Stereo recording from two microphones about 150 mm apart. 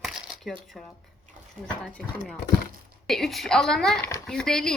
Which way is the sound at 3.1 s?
Centre (ahead or behind).